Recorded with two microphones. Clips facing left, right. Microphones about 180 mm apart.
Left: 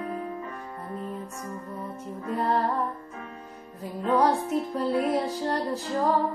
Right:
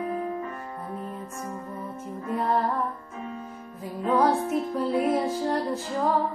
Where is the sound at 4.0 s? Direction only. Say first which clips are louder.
Right 1 dB; 5° right (ahead or behind).